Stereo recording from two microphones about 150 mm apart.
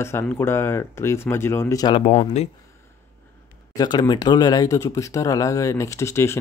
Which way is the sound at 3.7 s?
25° left (ahead or behind).